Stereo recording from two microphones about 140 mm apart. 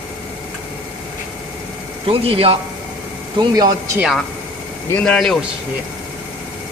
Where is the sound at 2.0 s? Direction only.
40° right (ahead or behind).